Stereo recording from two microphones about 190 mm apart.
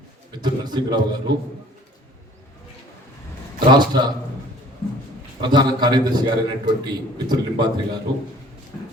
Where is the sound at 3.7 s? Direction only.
25° right (ahead or behind).